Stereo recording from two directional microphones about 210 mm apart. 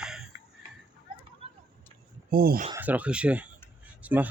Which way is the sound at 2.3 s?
45° right (ahead or behind).